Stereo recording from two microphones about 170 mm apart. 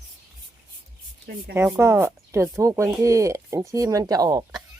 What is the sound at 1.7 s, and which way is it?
Speech, 15° right (ahead or behind).